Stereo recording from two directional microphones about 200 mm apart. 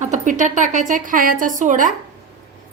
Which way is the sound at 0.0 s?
40° right (ahead or behind).